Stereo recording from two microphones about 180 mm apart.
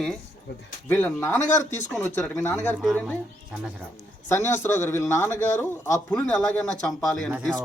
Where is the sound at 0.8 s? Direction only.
10° left (ahead or behind).